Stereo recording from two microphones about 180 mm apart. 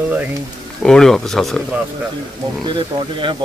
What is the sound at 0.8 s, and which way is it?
Speech, 5° left (ahead or behind).